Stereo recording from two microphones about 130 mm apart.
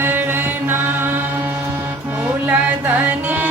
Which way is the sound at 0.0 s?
15° right (ahead or behind).